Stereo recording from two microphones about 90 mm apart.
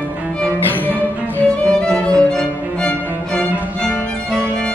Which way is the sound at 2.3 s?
10° left (ahead or behind).